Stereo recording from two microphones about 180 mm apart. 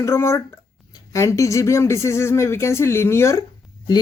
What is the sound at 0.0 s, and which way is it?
Speech, 15° left (ahead or behind).